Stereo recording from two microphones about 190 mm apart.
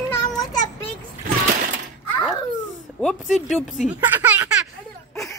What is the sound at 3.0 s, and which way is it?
Speech, centre (ahead or behind).